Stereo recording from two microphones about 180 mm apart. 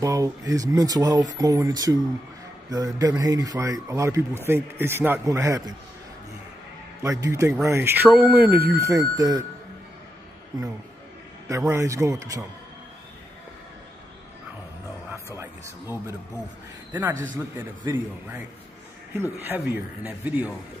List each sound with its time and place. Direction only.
0.0 s a man's voice: 20° right (ahead or behind)
7.0 s a man's voice: 15° right (ahead or behind)
11.4 s a man's voice: 15° right (ahead or behind)
15.3 s a man's voice: 15° right (ahead or behind)
19.4 s a man's voice: 10° right (ahead or behind)